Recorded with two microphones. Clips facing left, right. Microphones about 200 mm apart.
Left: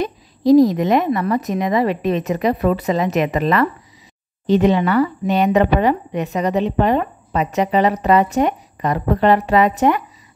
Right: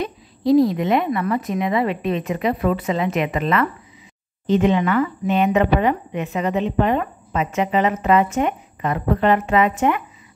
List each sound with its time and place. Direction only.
0.5 s speech: 40° left (ahead or behind)